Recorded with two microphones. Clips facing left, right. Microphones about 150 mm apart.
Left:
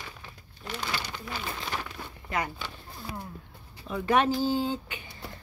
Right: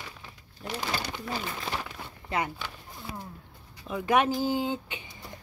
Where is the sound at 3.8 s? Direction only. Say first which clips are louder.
Even; 15° right (ahead or behind).